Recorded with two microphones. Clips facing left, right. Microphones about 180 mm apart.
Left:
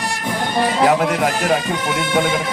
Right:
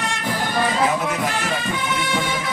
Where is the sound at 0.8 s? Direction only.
70° left (ahead or behind).